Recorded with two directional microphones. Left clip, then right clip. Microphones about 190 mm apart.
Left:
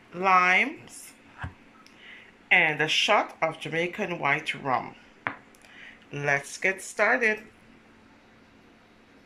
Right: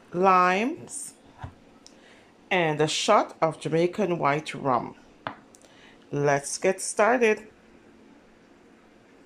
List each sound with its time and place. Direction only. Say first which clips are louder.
0.1 s a woman's voice: right 1 dB; 15° right (ahead or behind)
2.4 s a woman's voice: left 2 dB; 15° right (ahead or behind)